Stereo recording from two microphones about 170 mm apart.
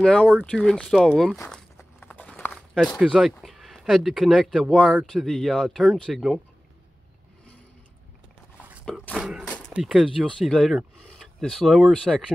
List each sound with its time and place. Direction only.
0.0 s speech: 5° left (ahead or behind)
1.5 s walk: 10° left (ahead or behind)
3.0 s speech: 5° right (ahead or behind)
8.8 s speech: 5° left (ahead or behind)